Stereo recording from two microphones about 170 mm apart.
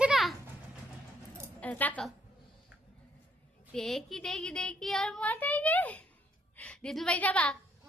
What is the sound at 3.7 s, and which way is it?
A woman's voice, centre (ahead or behind).